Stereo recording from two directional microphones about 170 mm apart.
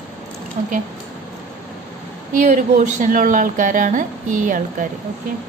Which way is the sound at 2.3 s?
45° right (ahead or behind).